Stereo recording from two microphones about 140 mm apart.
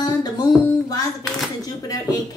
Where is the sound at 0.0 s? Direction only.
25° left (ahead or behind).